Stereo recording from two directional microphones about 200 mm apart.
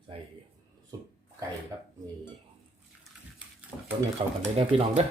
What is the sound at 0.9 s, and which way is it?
Speech, 20° right (ahead or behind).